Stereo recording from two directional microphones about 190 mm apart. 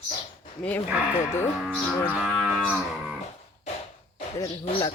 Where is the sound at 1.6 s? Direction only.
Centre (ahead or behind).